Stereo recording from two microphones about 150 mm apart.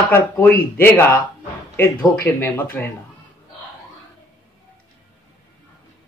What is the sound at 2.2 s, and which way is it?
Speech, 15° left (ahead or behind).